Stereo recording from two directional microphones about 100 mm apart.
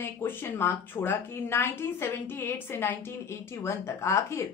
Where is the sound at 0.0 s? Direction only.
25° left (ahead or behind).